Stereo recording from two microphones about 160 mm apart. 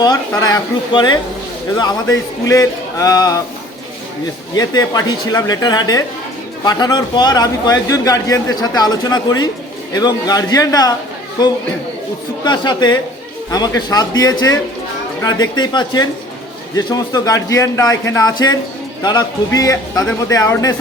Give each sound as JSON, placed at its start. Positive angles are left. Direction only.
{"t": 0.0, "sound": "a man's voice", "side_deg": 25}
{"t": 4.5, "sound": "a man's voice", "side_deg": 25}
{"t": 12.5, "sound": "a man's voice", "side_deg": 25}